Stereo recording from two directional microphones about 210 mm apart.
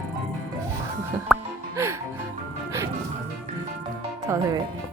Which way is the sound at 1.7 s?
15° right (ahead or behind).